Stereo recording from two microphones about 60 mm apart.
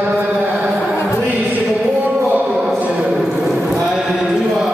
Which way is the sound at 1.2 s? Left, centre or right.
Right.